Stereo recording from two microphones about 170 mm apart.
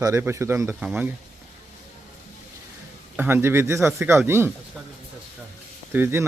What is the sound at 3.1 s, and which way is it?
Speech, 10° right (ahead or behind).